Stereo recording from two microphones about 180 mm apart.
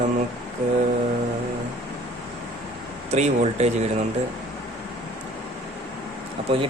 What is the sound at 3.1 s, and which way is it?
Speech, 40° right (ahead or behind).